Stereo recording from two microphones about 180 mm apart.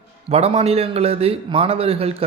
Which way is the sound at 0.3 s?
35° right (ahead or behind).